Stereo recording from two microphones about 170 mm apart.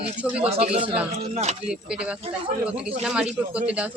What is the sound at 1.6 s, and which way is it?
Speech, 5° right (ahead or behind).